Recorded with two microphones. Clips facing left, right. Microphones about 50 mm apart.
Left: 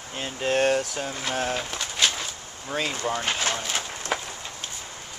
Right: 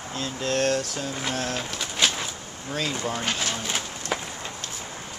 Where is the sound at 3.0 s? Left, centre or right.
Centre.